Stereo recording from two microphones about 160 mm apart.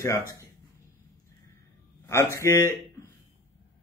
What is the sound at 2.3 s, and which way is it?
Speech, 15° left (ahead or behind).